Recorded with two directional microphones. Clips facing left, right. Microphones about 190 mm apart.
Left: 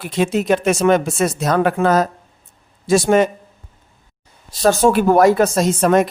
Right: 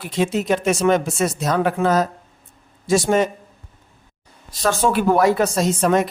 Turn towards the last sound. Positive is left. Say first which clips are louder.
# left 3 dB
turn(degrees=50)  # may be behind; listen again after turning